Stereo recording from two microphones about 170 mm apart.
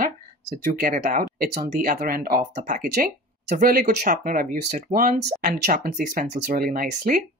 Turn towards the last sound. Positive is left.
turn(degrees=-50)  # may be behind; listen again after turning